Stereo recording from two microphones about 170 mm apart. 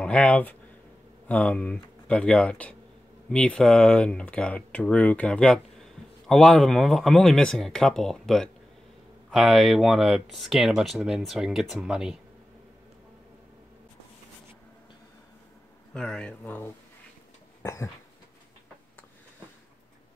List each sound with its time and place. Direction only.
0.0 s speech: 5° left (ahead or behind)
15.9 s speech: 5° left (ahead or behind)
17.6 s a sound: 15° left (ahead or behind)